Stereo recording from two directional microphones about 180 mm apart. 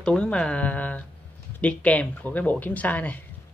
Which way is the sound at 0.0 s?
5° left (ahead or behind).